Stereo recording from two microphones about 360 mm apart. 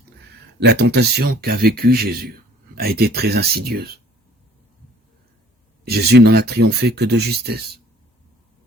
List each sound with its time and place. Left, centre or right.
0.6 s speech: right
5.8 s speech: right